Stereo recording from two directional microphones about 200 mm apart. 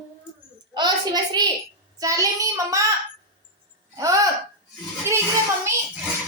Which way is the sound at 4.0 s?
15° right (ahead or behind).